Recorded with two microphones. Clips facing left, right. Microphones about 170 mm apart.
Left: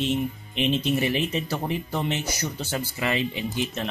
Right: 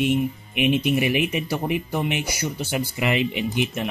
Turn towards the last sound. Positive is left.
turn(degrees=-20)  # may be behind; listen again after turning